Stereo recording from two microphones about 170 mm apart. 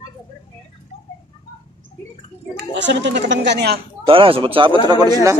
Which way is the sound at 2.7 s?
90° right.